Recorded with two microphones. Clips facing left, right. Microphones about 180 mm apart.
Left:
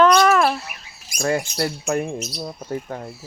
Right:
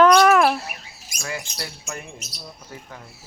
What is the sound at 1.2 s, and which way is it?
Speech, 50° left (ahead or behind).